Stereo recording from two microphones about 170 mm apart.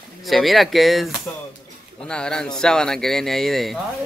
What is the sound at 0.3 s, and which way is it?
Speech, centre (ahead or behind).